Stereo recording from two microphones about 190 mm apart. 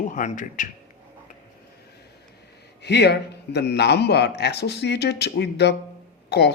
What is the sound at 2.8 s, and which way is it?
A man's voice, 60° left (ahead or behind).